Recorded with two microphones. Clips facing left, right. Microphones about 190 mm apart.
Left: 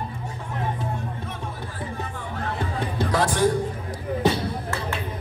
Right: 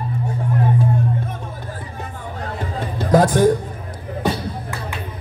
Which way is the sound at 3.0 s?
50° right (ahead or behind).